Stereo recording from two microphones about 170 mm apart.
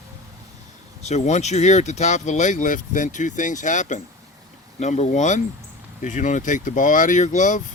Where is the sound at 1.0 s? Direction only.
45° left (ahead or behind).